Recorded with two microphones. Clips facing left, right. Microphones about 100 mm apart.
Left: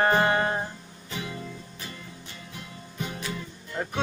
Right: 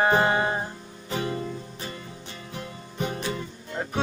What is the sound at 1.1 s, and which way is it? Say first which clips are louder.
Music: right 7 dB; 40° right (ahead or behind).